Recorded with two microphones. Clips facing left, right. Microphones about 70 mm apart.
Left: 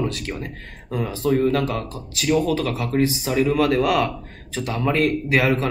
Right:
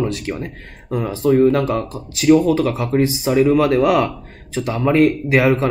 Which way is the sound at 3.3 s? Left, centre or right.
Centre.